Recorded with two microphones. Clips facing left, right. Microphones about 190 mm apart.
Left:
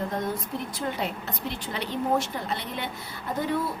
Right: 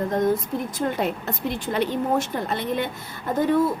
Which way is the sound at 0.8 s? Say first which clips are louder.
Right 6 dB; 50° right (ahead or behind).